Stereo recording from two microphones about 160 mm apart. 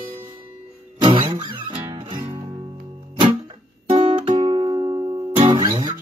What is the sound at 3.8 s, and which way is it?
Music, 45° right (ahead or behind).